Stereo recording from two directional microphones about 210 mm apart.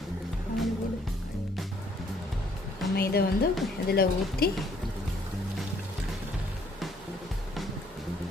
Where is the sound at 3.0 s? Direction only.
50° left (ahead or behind).